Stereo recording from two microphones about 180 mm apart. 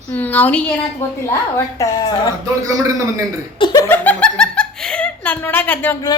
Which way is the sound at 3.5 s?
25° left (ahead or behind).